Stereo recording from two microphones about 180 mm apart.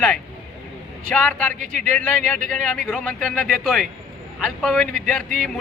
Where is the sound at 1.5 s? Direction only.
45° right (ahead or behind).